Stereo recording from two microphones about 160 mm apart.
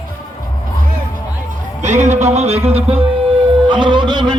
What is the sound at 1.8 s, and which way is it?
Music, 45° right (ahead or behind).